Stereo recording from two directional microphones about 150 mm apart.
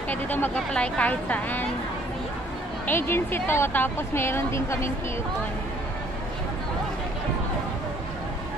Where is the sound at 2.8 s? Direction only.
15° left (ahead or behind).